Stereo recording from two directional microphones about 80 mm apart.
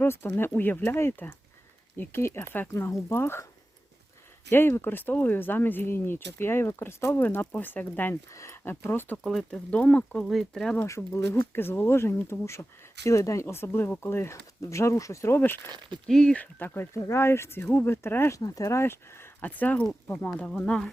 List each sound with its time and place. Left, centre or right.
0.0 s speech: left
4.5 s speech: left
8.1 s speech: left
9.1 s speech: centre
9.5 s speech: centre
10.2 s speech: centre
10.8 s speech: left
16.0 s speech: centre
16.4 s speech: left
18.3 s speech: left; by 20.9 s centre